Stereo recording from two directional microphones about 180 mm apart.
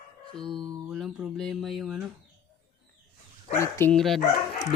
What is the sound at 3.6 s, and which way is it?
Speech, 15° left (ahead or behind).